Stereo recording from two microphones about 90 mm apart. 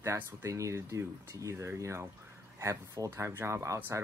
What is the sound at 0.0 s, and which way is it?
Speech, 30° right (ahead or behind).